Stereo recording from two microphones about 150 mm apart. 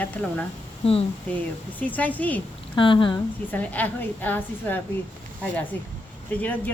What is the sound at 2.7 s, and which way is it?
Speech, 35° left (ahead or behind).